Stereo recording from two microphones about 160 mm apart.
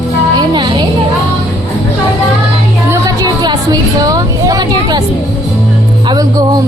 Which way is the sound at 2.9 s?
25° right (ahead or behind).